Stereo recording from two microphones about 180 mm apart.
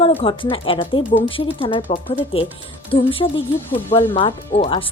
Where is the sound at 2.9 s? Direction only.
30° left (ahead or behind).